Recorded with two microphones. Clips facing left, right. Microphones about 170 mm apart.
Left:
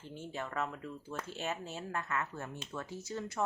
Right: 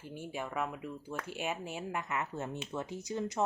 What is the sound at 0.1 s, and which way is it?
Speech, 10° right (ahead or behind).